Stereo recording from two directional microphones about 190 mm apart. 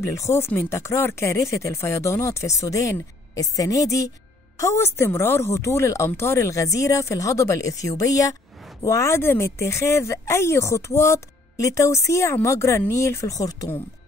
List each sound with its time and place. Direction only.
0.0 s speech: 15° left (ahead or behind)